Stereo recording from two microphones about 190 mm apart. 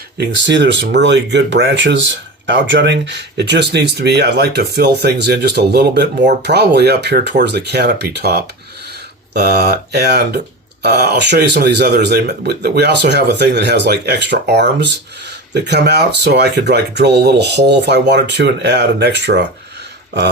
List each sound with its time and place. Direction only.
0.2 s speech: 65° right (ahead or behind)